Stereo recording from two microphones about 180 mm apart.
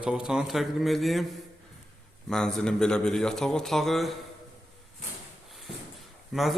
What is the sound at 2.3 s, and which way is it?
A man's voice, 5° left (ahead or behind).